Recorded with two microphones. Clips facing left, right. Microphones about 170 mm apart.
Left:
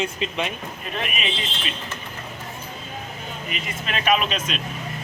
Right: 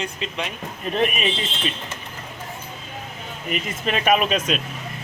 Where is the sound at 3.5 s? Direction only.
45° right (ahead or behind).